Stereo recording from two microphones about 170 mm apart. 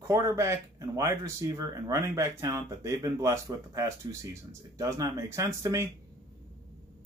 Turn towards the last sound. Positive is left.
turn(degrees=-20)  # may be behind; listen again after turning